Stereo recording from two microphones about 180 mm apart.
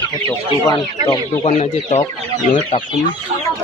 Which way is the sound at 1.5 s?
40° left (ahead or behind).